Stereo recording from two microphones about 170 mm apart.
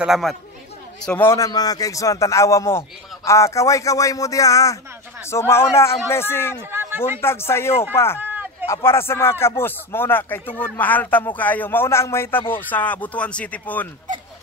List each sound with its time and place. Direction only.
0.0 s speech: centre (ahead or behind)
1.0 s a man's voice: 10° left (ahead or behind)
6.5 s a sound: 15° right (ahead or behind)
7.2 s speech: 15° left (ahead or behind)
8.2 s a sound: 10° right (ahead or behind)
8.6 s speech: 15° left (ahead or behind)